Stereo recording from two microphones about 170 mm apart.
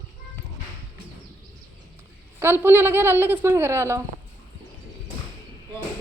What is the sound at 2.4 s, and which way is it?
A woman's voice, 15° right (ahead or behind).